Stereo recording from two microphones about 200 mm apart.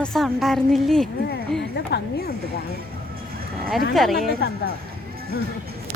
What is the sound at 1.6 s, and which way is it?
Speech, 55° left (ahead or behind).